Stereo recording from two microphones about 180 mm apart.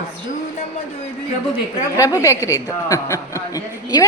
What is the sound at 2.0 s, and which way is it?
A woman's voice, 20° left (ahead or behind).